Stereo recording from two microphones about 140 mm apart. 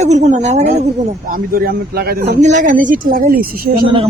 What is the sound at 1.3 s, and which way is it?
A woman's voice, 90° right.